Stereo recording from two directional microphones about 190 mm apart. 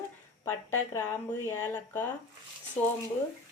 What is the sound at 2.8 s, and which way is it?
Speech, 35° left (ahead or behind).